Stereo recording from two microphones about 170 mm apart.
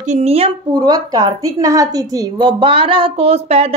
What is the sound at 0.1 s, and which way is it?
Speech, 35° right (ahead or behind).